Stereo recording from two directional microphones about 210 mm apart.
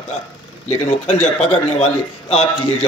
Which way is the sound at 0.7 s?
30° left (ahead or behind).